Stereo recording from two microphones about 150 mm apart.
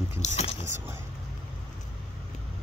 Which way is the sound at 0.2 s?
45° left (ahead or behind).